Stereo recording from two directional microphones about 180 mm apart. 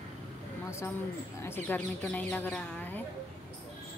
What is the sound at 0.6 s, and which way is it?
Speech, 15° left (ahead or behind).